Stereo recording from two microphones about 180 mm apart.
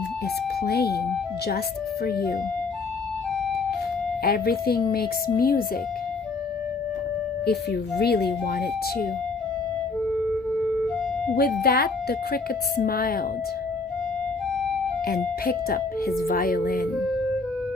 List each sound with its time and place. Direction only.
0.6 s speech: 60° left (ahead or behind)
2.0 s speech: 60° left (ahead or behind)
4.2 s speech: 60° left (ahead or behind)
7.4 s speech: 65° left (ahead or behind)
10.1 s music: centre (ahead or behind)
11.6 s speech: 60° left (ahead or behind)
15.0 s speech: 55° left (ahead or behind)
16.2 s music: 55° left (ahead or behind)